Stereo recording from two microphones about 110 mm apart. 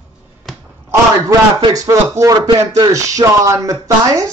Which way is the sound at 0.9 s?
30° right (ahead or behind).